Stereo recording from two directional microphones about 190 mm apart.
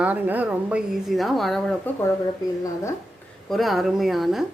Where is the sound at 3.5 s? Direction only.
Centre (ahead or behind).